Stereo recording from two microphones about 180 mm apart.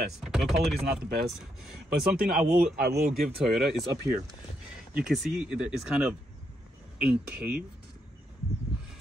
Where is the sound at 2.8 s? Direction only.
60° right (ahead or behind).